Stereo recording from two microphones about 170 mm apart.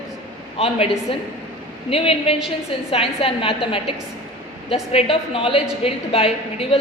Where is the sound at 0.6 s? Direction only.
35° left (ahead or behind).